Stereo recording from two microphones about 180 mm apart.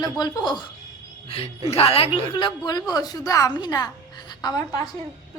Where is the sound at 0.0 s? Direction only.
25° left (ahead or behind).